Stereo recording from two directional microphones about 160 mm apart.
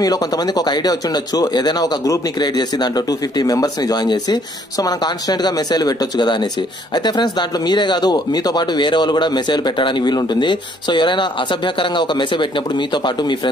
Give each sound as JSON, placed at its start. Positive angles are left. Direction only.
{"t": 0.0, "sound": "speech", "side_deg": 25}